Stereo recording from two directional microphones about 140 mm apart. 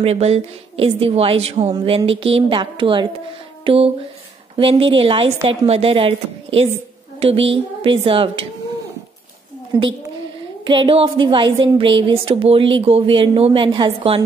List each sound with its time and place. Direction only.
0.0 s a woman's voice: 50° right (ahead or behind)
9.7 s a woman's voice: 15° right (ahead or behind)
10.6 s speech: 35° right (ahead or behind)